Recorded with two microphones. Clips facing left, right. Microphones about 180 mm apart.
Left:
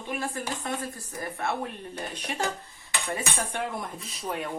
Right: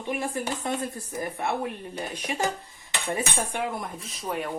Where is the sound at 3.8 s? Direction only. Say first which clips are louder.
Right 1 dB; centre (ahead or behind).